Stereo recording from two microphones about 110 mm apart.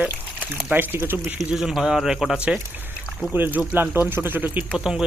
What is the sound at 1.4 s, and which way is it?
Speech, 5° right (ahead or behind).